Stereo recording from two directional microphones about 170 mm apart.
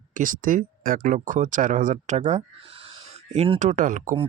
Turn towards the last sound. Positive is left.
turn(degrees=-50)  # may be behind; listen again after turning